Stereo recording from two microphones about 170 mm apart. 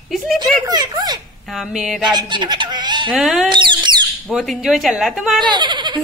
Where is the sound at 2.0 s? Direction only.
25° right (ahead or behind).